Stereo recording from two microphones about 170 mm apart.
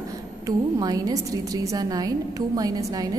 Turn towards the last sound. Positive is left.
turn(degrees=-20)  # may be behind; listen again after turning